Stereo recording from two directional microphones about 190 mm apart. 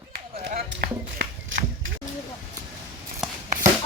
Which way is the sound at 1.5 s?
90° right.